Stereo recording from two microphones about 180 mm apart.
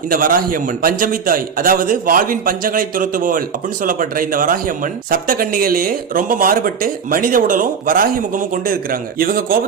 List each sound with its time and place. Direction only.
0.1 s a man's voice: 50° right (ahead or behind)